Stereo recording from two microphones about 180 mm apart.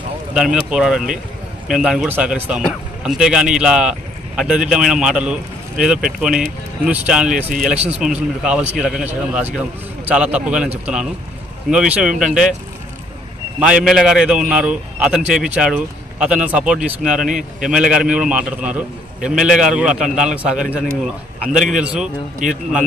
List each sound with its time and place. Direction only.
0.3 s speech: 5° right (ahead or behind)
11.7 s speech: 5° right (ahead or behind)
13.6 s speech: 5° right (ahead or behind)
21.7 s speech: 5° right (ahead or behind)
22.4 s a man's voice: 45° right (ahead or behind)